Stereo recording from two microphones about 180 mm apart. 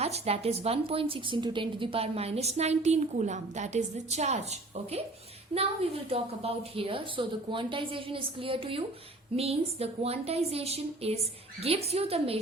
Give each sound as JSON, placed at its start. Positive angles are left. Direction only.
{"t": 0.0, "sound": "a woman's voice", "side_deg": -35}